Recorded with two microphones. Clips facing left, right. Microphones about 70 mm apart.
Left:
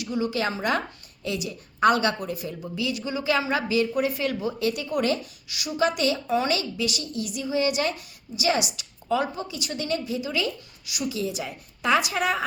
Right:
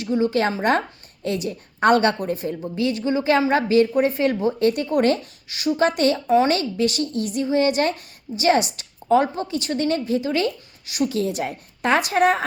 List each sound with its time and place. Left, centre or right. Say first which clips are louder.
0.0 s a woman's voice: right 6 dB; right